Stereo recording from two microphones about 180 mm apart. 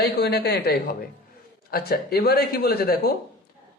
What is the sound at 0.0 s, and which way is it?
Speech, 65° left (ahead or behind).